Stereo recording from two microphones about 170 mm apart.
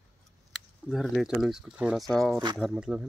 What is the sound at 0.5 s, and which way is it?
Speech, centre (ahead or behind).